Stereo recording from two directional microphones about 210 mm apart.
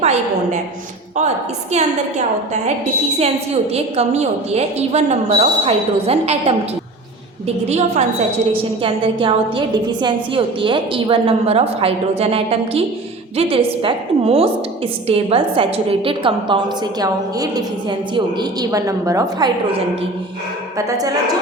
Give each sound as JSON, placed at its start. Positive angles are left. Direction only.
{"t": 0.0, "sound": "a woman's voice", "side_deg": -30}
{"t": 1.7, "sound": "a woman's voice", "side_deg": -35}